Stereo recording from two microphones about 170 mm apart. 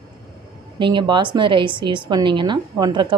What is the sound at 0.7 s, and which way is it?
A woman's voice, 30° right (ahead or behind).